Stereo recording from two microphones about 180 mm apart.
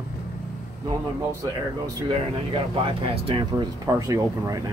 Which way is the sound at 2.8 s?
30° right (ahead or behind).